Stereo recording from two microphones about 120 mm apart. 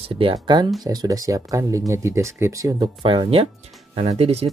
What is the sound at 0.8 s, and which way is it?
Speech, 30° right (ahead or behind).